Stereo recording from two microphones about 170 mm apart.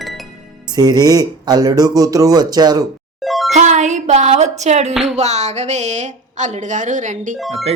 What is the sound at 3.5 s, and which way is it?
Music, 45° right (ahead or behind).